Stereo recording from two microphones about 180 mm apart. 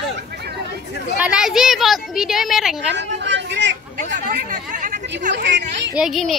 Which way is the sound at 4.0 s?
45° right (ahead or behind).